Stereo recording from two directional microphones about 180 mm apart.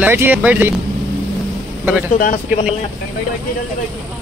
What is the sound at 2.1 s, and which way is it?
Speech, 50° left (ahead or behind).